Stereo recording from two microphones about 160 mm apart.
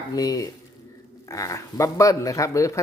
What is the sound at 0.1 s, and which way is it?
Speech, 25° left (ahead or behind).